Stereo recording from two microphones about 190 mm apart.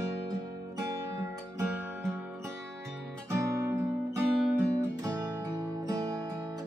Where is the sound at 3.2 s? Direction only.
10° right (ahead or behind).